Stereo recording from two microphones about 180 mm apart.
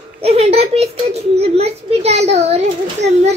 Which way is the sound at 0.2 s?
35° right (ahead or behind).